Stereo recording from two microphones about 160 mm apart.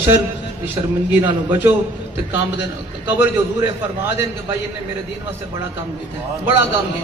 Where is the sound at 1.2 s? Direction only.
15° right (ahead or behind).